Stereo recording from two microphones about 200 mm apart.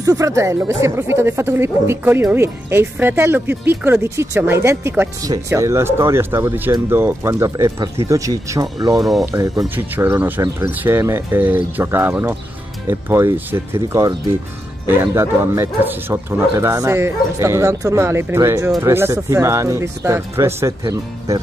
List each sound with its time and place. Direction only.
0.0 s speech: 15° right (ahead or behind)